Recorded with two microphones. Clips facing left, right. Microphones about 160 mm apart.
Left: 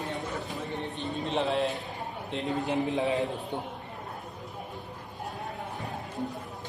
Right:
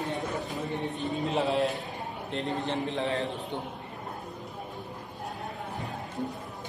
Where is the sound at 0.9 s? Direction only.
Centre (ahead or behind).